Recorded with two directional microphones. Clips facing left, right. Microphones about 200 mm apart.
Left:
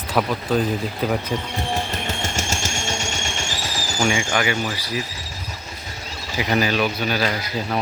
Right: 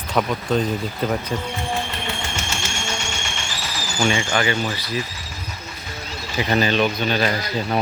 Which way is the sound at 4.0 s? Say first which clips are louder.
Right 1 dB; 10° left (ahead or behind).